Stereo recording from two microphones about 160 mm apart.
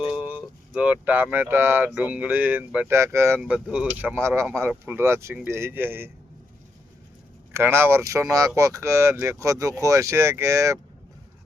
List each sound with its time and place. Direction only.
0.0 s speech: 5° right (ahead or behind)
3.4 s speech: 5° right (ahead or behind)
7.5 s speech: 15° right (ahead or behind)